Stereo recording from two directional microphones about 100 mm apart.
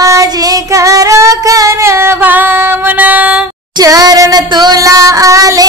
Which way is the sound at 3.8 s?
40° right (ahead or behind).